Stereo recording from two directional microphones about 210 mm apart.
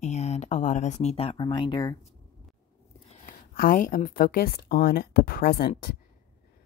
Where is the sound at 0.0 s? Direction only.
30° left (ahead or behind).